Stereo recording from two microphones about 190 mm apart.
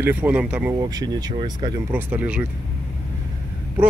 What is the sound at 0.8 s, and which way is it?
Speech, 20° right (ahead or behind).